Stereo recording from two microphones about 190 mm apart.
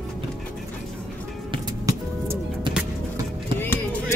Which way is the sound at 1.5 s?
20° right (ahead or behind).